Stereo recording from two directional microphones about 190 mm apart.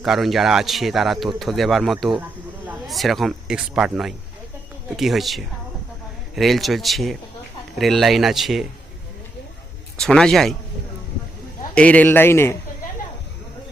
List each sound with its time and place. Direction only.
0.0 s speech: centre (ahead or behind)
10.0 s speech: 5° left (ahead or behind)
11.7 s a man's voice: 5° left (ahead or behind)